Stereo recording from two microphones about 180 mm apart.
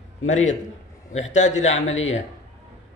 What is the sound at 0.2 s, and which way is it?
A man's voice, 40° left (ahead or behind).